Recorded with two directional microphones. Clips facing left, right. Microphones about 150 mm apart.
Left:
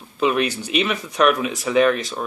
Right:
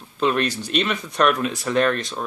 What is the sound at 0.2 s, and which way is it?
Speech, 5° left (ahead or behind).